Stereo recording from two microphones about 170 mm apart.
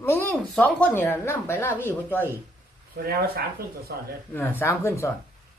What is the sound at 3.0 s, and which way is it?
Speech, 65° right (ahead or behind).